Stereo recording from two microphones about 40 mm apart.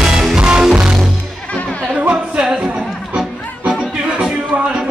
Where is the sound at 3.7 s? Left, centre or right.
Right.